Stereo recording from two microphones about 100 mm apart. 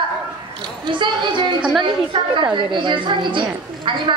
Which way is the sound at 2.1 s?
55° right (ahead or behind).